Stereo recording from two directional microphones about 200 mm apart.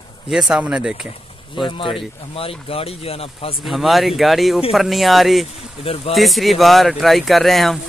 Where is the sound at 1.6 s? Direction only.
25° left (ahead or behind).